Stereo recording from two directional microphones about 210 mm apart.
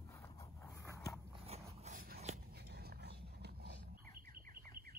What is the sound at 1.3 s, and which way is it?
Dog, 30° right (ahead or behind).